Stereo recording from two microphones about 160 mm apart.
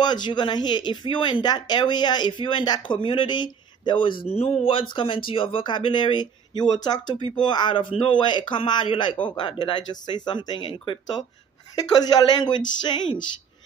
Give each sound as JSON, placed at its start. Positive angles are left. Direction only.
{"t": 0.0, "sound": "speech", "side_deg": 25}